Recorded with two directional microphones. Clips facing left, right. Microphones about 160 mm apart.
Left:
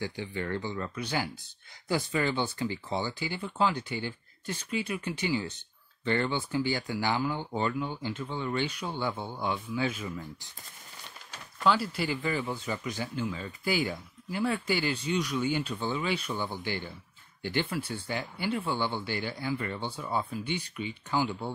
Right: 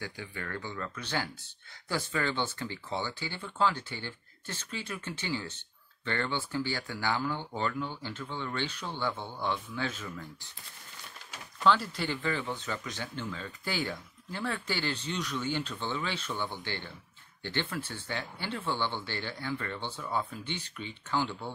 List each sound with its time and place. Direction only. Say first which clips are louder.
0.0 s speech: left 6 dB; 20° left (ahead or behind)
11.6 s speech: even; 10° left (ahead or behind)